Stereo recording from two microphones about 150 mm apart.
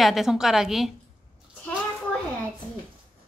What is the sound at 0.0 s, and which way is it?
Speech, centre (ahead or behind).